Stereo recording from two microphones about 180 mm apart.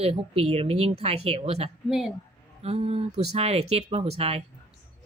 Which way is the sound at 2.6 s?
35° right (ahead or behind).